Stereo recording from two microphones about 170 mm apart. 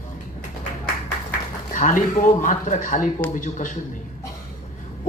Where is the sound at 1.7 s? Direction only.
50° left (ahead or behind).